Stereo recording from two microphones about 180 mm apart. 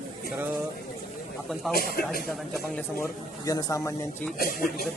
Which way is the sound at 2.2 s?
Centre (ahead or behind).